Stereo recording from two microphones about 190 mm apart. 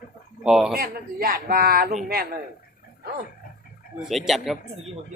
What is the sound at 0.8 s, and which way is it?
Speech, 50° right (ahead or behind).